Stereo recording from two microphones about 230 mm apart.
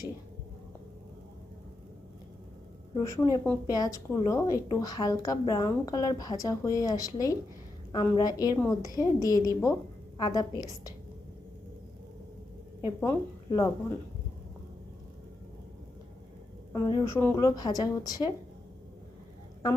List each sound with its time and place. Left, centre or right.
2.9 s a woman's voice: centre
12.8 s a woman's voice: centre
16.7 s a woman's voice: centre